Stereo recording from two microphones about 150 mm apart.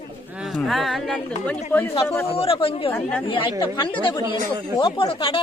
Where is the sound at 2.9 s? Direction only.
10° left (ahead or behind).